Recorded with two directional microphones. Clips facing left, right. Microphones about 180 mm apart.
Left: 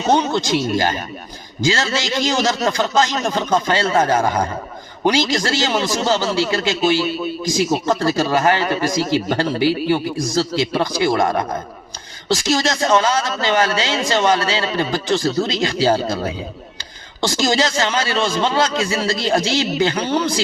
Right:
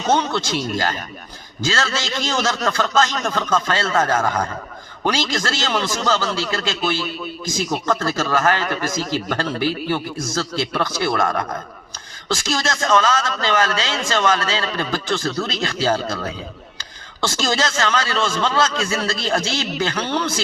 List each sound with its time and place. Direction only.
0.1 s a man's voice: 15° left (ahead or behind)